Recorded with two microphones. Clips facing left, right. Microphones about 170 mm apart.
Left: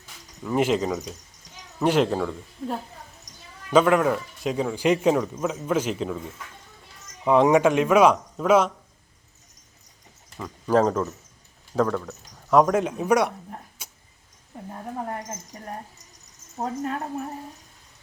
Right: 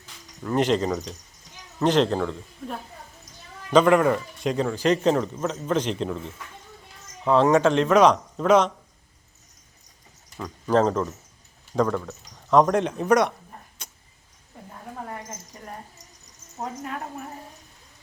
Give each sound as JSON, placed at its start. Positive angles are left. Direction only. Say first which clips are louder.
{"t": 0.4, "sound": "speech", "louder": "even", "side_deg": 5}
{"t": 3.7, "sound": "speech", "louder": "right 1 dB", "side_deg": 5}
{"t": 10.3, "sound": "speech", "louder": "even", "side_deg": 5}
{"t": 13.8, "sound": "vehicle", "louder": "right 1 dB", "side_deg": 5}
{"t": 16.6, "sound": "a woman's voice", "louder": "left 4 dB", "side_deg": 35}